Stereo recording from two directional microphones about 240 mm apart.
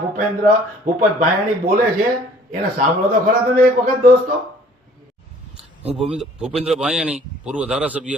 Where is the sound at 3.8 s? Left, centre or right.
Right.